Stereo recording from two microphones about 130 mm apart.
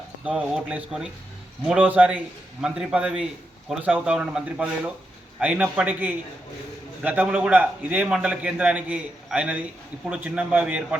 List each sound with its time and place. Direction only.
0.3 s a man's voice: 10° right (ahead or behind)